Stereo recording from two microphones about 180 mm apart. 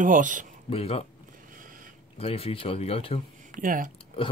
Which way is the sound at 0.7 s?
35° left (ahead or behind).